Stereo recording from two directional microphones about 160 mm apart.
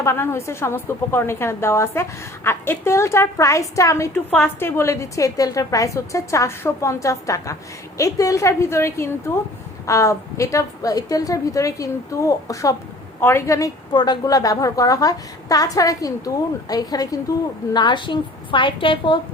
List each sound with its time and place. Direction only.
0.0 s a woman's voice: 15° left (ahead or behind); by 19.2 s 30° left (ahead or behind)